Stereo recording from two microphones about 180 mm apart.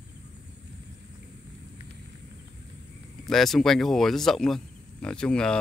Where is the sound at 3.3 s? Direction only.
Centre (ahead or behind).